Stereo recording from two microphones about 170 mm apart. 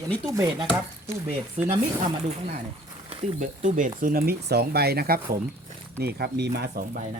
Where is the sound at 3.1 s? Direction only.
40° right (ahead or behind); by 6.8 s 75° right (ahead or behind).